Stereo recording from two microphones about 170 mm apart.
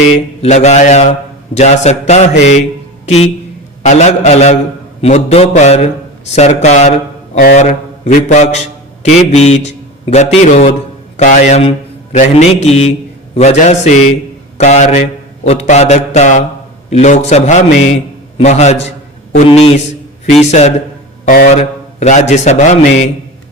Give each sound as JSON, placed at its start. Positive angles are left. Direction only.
{"t": 0.4, "sound": "a man's voice", "side_deg": 40}
{"t": 1.5, "sound": "mantra", "side_deg": 40}
{"t": 2.4, "sound": "a man's voice", "side_deg": 45}
{"t": 3.8, "sound": "mantra", "side_deg": 45}
{"t": 6.3, "sound": "a man's voice", "side_deg": 40}
{"t": 9.0, "sound": "mantra", "side_deg": 40}
{"t": 10.1, "sound": "a man's voice", "side_deg": 45}
{"t": 12.1, "sound": "mantra", "side_deg": 40}
{"t": 14.6, "sound": "a man's voice", "side_deg": 45}
{"t": 18.3, "sound": "mantra", "side_deg": 40}
{"t": 21.2, "sound": "speech", "side_deg": 60}
{"t": 21.5, "sound": "a man's voice", "side_deg": 45}